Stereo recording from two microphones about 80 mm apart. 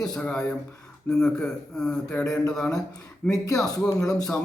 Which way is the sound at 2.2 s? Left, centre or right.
Left.